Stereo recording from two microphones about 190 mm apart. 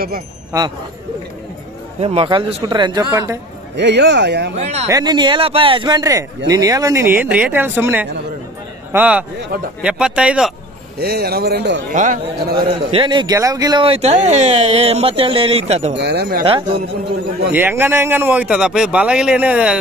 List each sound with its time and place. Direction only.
2.0 s a man's voice: 30° right (ahead or behind)
3.7 s speech: 65° right (ahead or behind)
4.6 s a man's voice: 35° right (ahead or behind)
4.8 s speech: 20° right (ahead or behind)
11.0 s speech: 55° right (ahead or behind)
11.9 s speech: 45° right (ahead or behind)
12.5 s a man's voice: 25° right (ahead or behind)
15.9 s speech: 60° right (ahead or behind)
16.4 s a man's voice: 25° right (ahead or behind)
17.5 s speech: 10° right (ahead or behind)